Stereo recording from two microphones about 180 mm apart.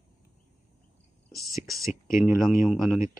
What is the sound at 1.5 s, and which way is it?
Speech, 15° right (ahead or behind).